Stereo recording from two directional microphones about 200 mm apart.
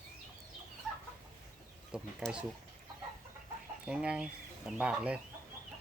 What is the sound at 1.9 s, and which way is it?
Bird, 5° right (ahead or behind).